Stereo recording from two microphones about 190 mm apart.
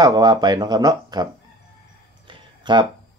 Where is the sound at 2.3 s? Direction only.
25° right (ahead or behind).